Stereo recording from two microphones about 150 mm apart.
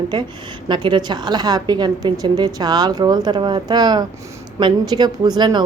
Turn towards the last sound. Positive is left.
turn(degrees=-30)  # may be behind; listen again after turning